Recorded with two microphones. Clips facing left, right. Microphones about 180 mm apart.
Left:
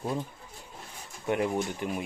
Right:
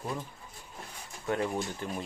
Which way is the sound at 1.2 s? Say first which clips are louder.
Left 3 dB; 20° left (ahead or behind).